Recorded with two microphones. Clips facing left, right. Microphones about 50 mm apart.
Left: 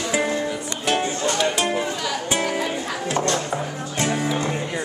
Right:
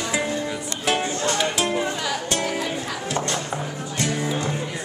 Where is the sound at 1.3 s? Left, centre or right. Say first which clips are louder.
Left 1 dB; centre.